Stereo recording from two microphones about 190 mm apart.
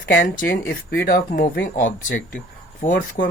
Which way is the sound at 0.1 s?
45° left (ahead or behind).